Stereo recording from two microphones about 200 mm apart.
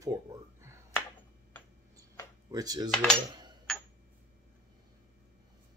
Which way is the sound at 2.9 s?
5° left (ahead or behind).